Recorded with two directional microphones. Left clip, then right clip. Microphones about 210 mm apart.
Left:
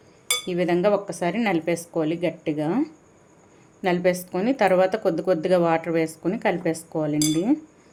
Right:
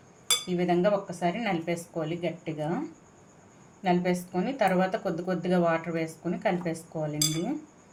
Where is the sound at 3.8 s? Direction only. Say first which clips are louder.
Left 5 dB; 50° left (ahead or behind).